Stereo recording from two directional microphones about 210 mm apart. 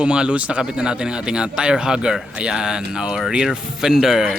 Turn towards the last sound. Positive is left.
turn(degrees=0)  # may be behind; listen again after turning